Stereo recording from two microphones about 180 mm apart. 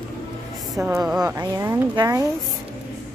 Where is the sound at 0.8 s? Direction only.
10° right (ahead or behind).